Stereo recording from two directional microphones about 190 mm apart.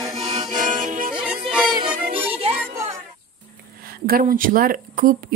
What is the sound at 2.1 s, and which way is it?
Music, 30° right (ahead or behind).